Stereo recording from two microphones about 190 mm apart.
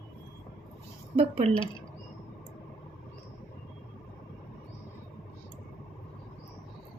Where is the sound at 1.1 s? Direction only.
30° right (ahead or behind).